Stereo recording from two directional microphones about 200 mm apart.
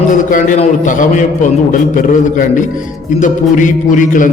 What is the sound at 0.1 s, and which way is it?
A man's voice, 40° left (ahead or behind).